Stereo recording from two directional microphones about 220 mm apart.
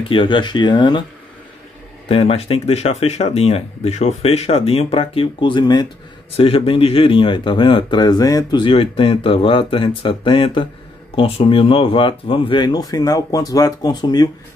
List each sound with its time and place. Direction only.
0.1 s speech: 20° left (ahead or behind)
2.0 s speech: 25° left (ahead or behind)